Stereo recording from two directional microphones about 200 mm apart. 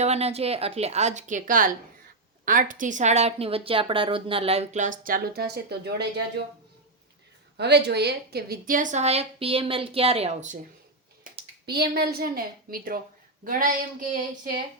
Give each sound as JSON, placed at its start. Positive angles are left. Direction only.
{"t": 0.0, "sound": "speech", "side_deg": -30}
{"t": 7.5, "sound": "speech", "side_deg": -55}
{"t": 11.2, "sound": "speech", "side_deg": -55}